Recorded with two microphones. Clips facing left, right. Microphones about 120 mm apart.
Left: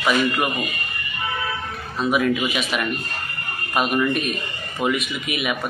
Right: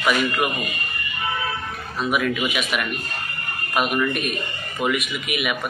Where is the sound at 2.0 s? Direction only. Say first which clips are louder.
Left 2 dB; 30° left (ahead or behind).